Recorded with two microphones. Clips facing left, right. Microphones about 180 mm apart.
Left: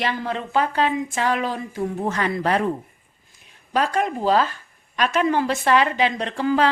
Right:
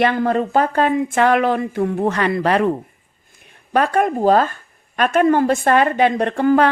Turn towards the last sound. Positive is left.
turn(degrees=-55)  # may be behind; listen again after turning